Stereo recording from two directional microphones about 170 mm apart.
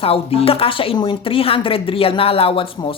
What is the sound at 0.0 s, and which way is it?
Speech, 35° left (ahead or behind).